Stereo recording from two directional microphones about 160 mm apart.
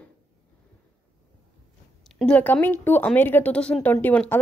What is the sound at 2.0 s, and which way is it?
Speech, 5° left (ahead or behind).